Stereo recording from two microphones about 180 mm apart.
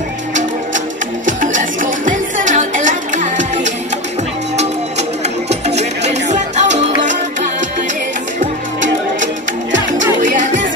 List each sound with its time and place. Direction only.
0.3 s music: 45° right (ahead or behind)
5.5 s music: 40° right (ahead or behind)
8.4 s music: 45° right (ahead or behind)